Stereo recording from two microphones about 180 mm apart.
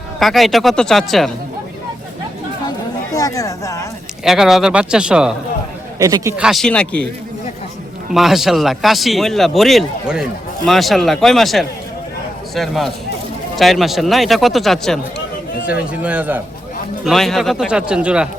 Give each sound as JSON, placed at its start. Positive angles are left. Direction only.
{"t": 0.2, "sound": "speech", "side_deg": 0}
{"t": 2.6, "sound": "chatter", "side_deg": 20}
{"t": 4.2, "sound": "speech", "side_deg": 0}
{"t": 6.0, "sound": "speech", "side_deg": -20}
{"t": 6.3, "sound": "speech", "side_deg": 0}
{"t": 8.1, "sound": "a man's voice", "side_deg": 0}